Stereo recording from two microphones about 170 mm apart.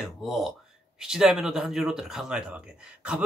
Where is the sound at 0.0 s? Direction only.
Centre (ahead or behind).